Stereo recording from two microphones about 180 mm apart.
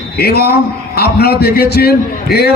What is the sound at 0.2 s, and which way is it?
A man's voice, 60° left (ahead or behind).